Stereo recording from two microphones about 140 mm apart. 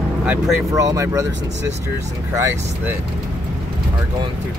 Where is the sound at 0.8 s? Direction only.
25° right (ahead or behind).